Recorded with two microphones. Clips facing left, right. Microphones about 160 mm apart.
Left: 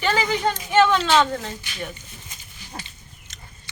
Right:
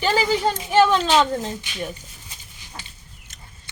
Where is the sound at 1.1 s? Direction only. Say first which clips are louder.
Right 1 dB; 15° right (ahead or behind).